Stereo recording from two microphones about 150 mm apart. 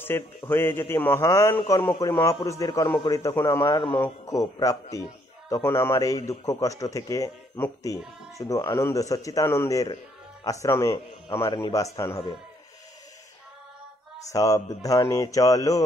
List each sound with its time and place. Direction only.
0.0 s a man's voice: 15° left (ahead or behind)
3.6 s a man's voice: 30° left (ahead or behind)
14.3 s a man's voice: 20° left (ahead or behind)